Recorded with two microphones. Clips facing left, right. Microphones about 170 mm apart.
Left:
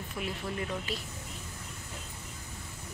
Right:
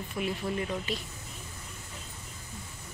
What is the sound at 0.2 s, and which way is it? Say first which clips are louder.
Speech: right 4 dB; centre (ahead or behind).